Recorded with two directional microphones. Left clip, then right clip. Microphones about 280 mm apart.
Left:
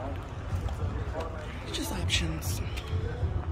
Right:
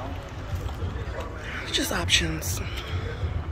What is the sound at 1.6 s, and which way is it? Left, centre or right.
Speech, centre.